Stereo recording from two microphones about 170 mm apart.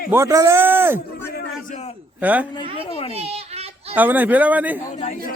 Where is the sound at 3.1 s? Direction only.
35° right (ahead or behind).